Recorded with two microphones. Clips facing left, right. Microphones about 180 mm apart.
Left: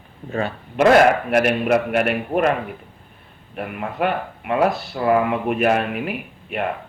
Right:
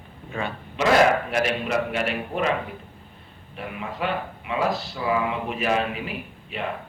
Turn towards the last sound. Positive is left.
turn(degrees=60)  # may be behind; listen again after turning